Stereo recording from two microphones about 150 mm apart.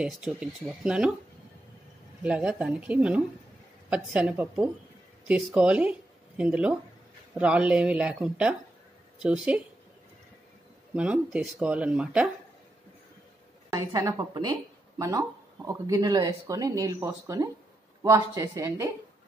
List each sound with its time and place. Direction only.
0.0 s speech: 5° right (ahead or behind)
2.2 s speech: 5° right (ahead or behind)
11.0 s speech: 10° right (ahead or behind)
13.7 s speech: 25° right (ahead or behind)